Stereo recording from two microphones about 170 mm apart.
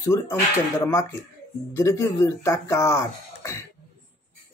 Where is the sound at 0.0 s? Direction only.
15° left (ahead or behind).